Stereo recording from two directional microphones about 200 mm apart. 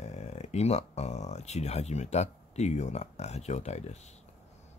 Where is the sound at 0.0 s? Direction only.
35° left (ahead or behind).